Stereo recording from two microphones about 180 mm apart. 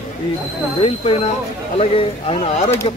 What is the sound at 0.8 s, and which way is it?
Speech, 30° left (ahead or behind).